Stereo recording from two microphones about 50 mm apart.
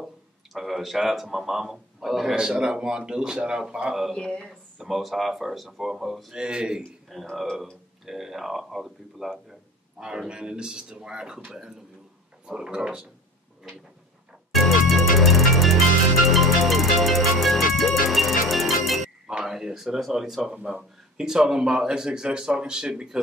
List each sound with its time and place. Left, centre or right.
0.0 s speech: centre
2.6 s speech: centre
4.1 s speech: centre
4.8 s speech: centre
6.3 s speech: centre
7.1 s a man's voice: centre
12.4 s speech: centre
14.5 s music: centre
19.2 s speech: centre
20.5 s speech: centre